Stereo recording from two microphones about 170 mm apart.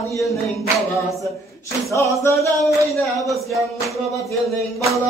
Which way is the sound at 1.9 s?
15° left (ahead or behind).